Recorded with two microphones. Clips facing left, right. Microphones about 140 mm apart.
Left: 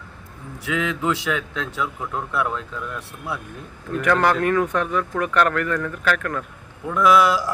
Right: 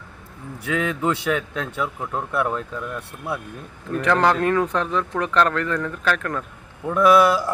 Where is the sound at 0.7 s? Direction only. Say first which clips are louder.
Right 1 dB; 40° right (ahead or behind).